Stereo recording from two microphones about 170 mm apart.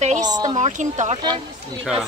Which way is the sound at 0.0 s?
45° right (ahead or behind).